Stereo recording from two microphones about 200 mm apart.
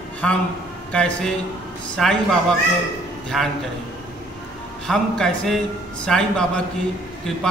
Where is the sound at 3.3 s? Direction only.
Centre (ahead or behind).